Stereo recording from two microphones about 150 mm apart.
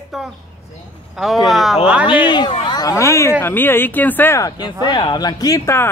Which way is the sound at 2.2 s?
30° left (ahead or behind).